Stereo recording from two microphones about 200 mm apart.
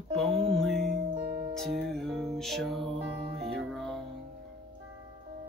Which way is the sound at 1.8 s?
Centre (ahead or behind).